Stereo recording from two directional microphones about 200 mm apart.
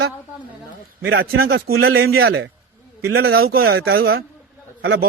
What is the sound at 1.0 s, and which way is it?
Speech, 55° right (ahead or behind).